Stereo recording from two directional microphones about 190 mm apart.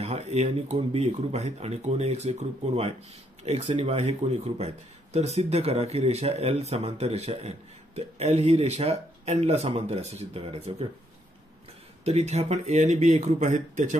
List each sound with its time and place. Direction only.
0.0 s speech: 35° right (ahead or behind)
12.0 s speech: 35° right (ahead or behind)